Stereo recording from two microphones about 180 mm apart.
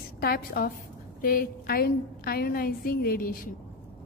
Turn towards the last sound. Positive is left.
turn(degrees=55)  # may be behind; listen again after turning